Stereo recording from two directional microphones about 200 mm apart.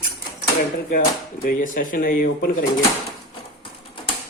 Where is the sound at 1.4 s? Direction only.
45° left (ahead or behind).